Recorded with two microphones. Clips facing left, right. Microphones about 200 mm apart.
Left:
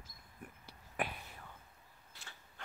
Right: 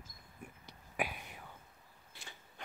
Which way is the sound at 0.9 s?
10° right (ahead or behind).